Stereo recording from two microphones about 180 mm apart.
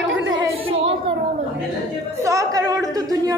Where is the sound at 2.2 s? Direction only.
20° right (ahead or behind).